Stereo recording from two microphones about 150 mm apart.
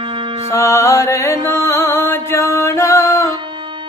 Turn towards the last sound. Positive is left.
turn(degrees=20)  # may be behind; listen again after turning